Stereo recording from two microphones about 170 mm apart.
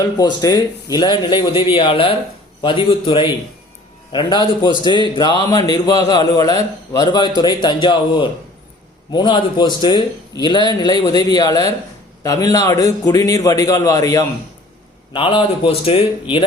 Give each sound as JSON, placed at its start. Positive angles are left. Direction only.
{"t": 0.0, "sound": "a man's voice", "side_deg": 25}
{"t": 15.1, "sound": "speech", "side_deg": 30}